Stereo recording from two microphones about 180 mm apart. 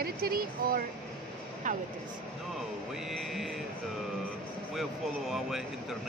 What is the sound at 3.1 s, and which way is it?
Speech, centre (ahead or behind).